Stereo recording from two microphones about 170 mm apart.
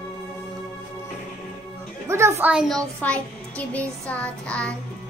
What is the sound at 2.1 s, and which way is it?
A child's voice, 15° right (ahead or behind).